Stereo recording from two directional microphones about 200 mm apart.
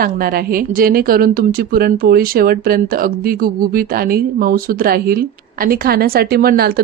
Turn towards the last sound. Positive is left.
turn(degrees=-50)  # may be behind; listen again after turning